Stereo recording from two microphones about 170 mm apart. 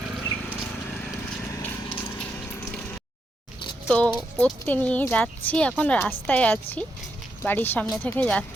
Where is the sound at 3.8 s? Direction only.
5° left (ahead or behind).